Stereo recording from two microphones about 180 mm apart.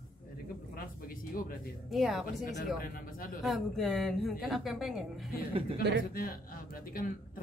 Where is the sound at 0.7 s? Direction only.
50° left (ahead or behind).